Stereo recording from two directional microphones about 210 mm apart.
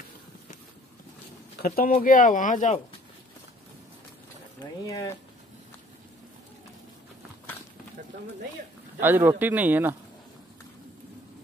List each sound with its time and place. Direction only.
1.9 s speech: 40° left (ahead or behind)
4.6 s speech: 15° left (ahead or behind)
9.0 s speech: 10° right (ahead or behind)